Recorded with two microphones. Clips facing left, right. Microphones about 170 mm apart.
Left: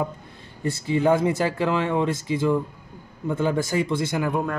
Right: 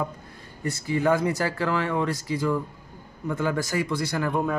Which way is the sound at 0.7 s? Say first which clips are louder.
Left 3 dB; 25° left (ahead or behind).